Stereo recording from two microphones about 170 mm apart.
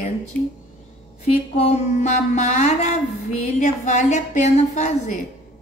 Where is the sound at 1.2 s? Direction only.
40° left (ahead or behind).